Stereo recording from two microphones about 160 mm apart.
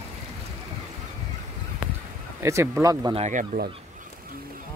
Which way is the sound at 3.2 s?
50° right (ahead or behind).